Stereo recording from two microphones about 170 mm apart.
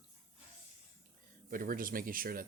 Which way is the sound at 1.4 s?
55° right (ahead or behind).